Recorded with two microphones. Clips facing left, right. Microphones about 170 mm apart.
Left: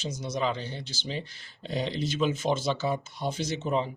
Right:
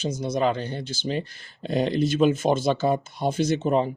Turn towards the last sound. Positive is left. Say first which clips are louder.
# right 7 dB
turn(degrees=-50)  # may be behind; listen again after turning